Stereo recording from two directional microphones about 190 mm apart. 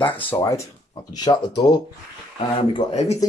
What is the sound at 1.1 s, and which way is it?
Speech, 20° left (ahead or behind).